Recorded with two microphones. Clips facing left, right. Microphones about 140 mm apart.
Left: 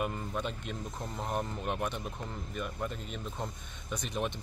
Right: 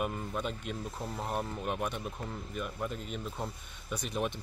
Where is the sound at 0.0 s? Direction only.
5° right (ahead or behind).